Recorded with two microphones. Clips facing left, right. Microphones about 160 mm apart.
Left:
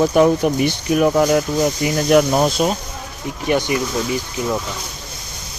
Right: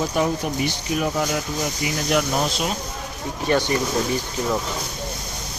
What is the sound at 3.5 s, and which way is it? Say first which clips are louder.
Speech: left 2 dB; 15° left (ahead or behind).